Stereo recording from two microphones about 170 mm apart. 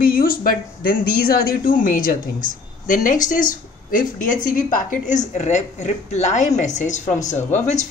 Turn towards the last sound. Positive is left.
turn(degrees=45)  # may be behind; listen again after turning